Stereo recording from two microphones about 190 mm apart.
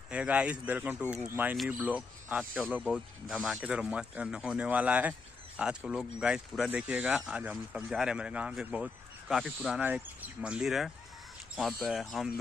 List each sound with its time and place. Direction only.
0.1 s speech: 5° right (ahead or behind)